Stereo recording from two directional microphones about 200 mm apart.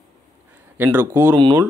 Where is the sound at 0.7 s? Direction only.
10° right (ahead or behind).